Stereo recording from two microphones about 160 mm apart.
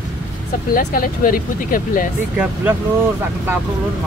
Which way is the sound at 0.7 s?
60° left (ahead or behind).